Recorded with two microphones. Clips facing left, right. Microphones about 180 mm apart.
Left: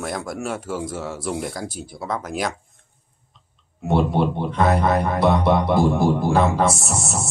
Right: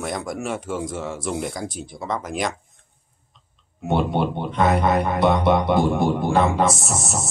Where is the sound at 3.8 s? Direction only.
Centre (ahead or behind).